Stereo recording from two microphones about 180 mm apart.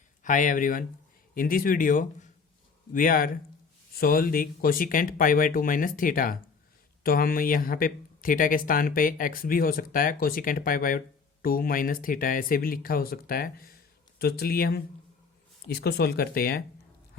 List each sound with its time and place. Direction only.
0.2 s speech: 45° left (ahead or behind)